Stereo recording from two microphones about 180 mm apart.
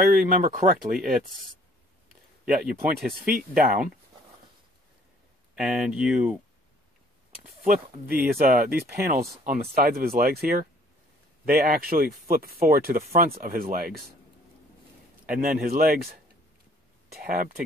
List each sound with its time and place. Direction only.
0.1 s speech: 50° right (ahead or behind)
3.3 s speech: 55° right (ahead or behind)
5.6 s speech: 5° right (ahead or behind)
7.6 s speech: 50° right (ahead or behind)
13.0 s speech: 40° right (ahead or behind)
13.3 s speech: 55° right (ahead or behind)
15.2 s speech: 50° right (ahead or behind)